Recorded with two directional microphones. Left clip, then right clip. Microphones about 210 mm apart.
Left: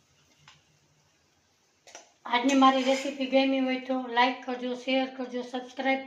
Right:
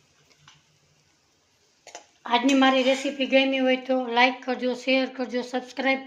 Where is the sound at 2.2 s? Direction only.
50° right (ahead or behind).